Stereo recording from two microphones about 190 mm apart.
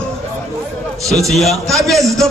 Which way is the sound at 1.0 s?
Centre (ahead or behind).